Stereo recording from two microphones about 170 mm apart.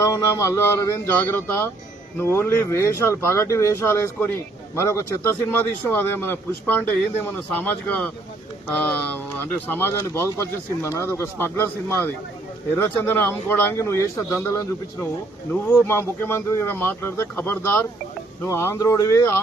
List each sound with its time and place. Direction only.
0.0 s speech: 20° left (ahead or behind)
15.7 s speech: 15° left (ahead or behind)